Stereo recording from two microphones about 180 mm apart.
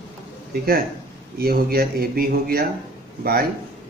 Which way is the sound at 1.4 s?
60° right (ahead or behind).